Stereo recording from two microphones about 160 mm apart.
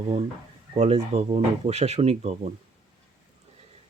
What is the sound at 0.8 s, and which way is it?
Speech, 40° right (ahead or behind).